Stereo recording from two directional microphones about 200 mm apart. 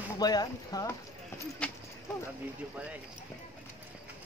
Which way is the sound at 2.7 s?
5° right (ahead or behind).